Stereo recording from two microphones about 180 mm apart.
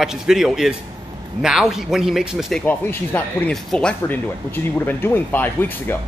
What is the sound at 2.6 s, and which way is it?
Speech, 10° left (ahead or behind).